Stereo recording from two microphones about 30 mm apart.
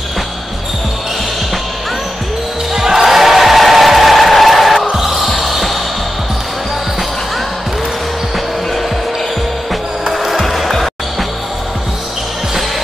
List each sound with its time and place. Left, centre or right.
2.7 s basketball bounce: centre
3.1 s choir: centre
4.9 s mechanisms: centre
10.1 s music: centre
10.4 s music: centre